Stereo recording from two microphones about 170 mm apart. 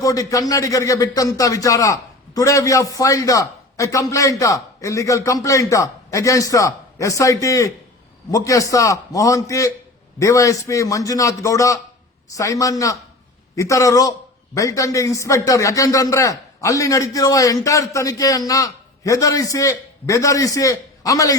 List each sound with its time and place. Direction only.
0.0 s a man's voice: 20° left (ahead or behind)